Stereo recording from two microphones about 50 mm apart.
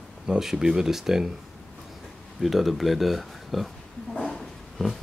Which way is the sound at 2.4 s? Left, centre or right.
Centre.